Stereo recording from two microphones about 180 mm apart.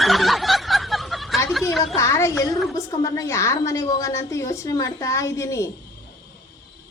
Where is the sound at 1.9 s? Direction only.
15° left (ahead or behind).